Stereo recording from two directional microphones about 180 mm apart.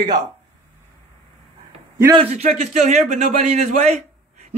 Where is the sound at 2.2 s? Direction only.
35° right (ahead or behind).